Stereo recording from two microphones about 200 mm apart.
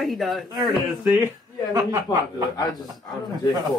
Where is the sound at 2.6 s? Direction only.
20° left (ahead or behind).